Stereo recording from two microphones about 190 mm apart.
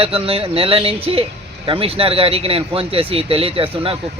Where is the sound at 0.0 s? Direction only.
30° right (ahead or behind).